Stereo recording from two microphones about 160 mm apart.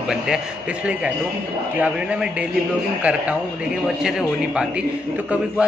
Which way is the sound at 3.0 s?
10° right (ahead or behind).